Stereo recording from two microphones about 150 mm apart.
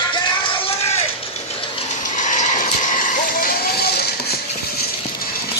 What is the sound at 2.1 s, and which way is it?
Vehicle, 55° left (ahead or behind).